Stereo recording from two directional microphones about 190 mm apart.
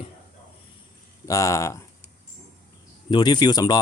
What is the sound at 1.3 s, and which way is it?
Speech, 15° left (ahead or behind).